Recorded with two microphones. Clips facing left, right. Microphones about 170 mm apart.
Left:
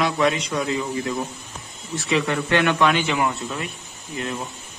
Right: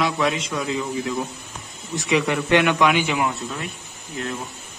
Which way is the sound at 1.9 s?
20° right (ahead or behind).